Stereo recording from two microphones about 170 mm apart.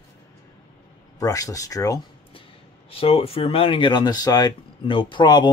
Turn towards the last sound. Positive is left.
turn(degrees=25)  # may be behind; listen again after turning